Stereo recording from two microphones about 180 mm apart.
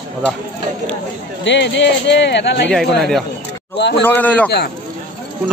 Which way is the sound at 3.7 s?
75° left (ahead or behind).